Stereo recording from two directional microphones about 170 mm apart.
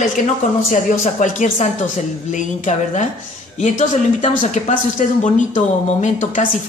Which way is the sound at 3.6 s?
45° left (ahead or behind).